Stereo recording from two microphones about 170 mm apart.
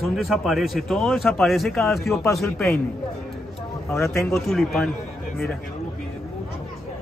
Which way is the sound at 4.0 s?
15° left (ahead or behind).